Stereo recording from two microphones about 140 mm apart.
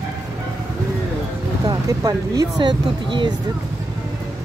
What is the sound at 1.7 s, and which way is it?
Speech, 25° right (ahead or behind).